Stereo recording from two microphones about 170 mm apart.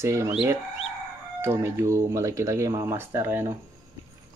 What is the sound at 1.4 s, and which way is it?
Speech, 15° right (ahead or behind).